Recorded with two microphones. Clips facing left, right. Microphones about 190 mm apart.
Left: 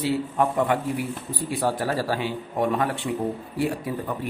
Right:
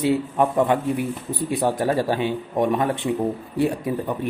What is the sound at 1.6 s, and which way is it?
Speech, 20° right (ahead or behind).